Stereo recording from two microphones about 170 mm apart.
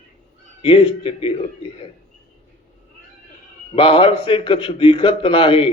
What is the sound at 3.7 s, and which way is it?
A man's voice, 30° left (ahead or behind).